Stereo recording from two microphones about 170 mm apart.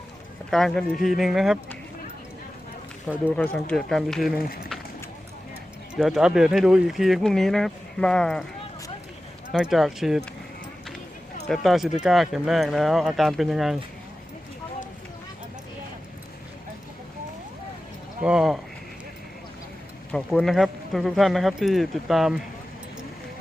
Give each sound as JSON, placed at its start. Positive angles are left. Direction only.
{"t": 0.5, "sound": "speech", "side_deg": 5}
{"t": 3.3, "sound": "speech", "side_deg": 5}
{"t": 4.4, "sound": "speech", "side_deg": 60}
{"t": 6.0, "sound": "speech", "side_deg": 0}
{"t": 9.5, "sound": "speech", "side_deg": 0}
{"t": 11.4, "sound": "speech", "side_deg": 0}
{"t": 18.2, "sound": "speech", "side_deg": -5}
{"t": 20.1, "sound": "speech", "side_deg": 0}